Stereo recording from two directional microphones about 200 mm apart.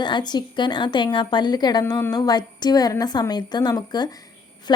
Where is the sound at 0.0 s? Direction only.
20° left (ahead or behind).